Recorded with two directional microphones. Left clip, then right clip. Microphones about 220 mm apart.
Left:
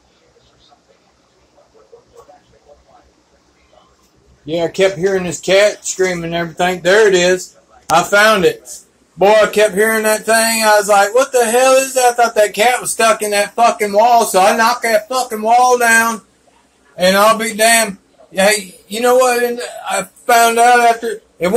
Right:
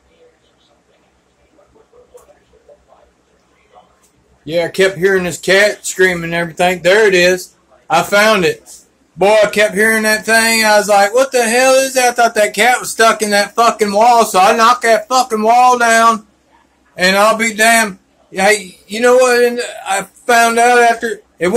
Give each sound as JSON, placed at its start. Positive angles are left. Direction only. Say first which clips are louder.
{"t": 4.5, "sound": "a man's voice", "louder": "right 1 dB", "side_deg": -20}
{"t": 9.2, "sound": "a sound", "louder": "even", "side_deg": -15}
{"t": 18.3, "sound": "a man's voice", "louder": "right 1 dB", "side_deg": -15}